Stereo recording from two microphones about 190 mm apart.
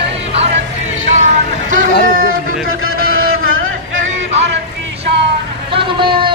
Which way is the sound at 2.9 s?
90° right.